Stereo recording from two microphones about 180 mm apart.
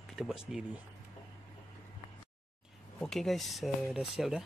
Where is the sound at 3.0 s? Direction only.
Centre (ahead or behind).